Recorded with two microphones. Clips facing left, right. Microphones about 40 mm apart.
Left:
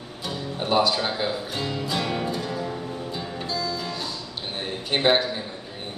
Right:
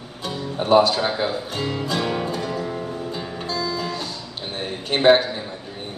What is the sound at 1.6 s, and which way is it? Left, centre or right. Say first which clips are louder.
Music: right 3 dB; right.